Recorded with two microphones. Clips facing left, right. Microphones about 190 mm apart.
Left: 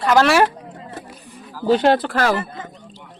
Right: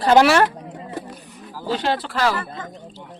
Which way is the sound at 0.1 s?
30° right (ahead or behind).